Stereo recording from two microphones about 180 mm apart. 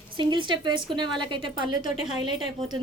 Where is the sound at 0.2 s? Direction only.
25° right (ahead or behind).